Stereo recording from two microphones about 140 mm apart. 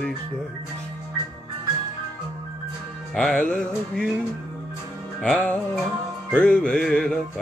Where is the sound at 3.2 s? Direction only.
5° left (ahead or behind).